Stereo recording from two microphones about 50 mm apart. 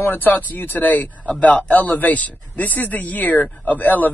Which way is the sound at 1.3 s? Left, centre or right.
Left.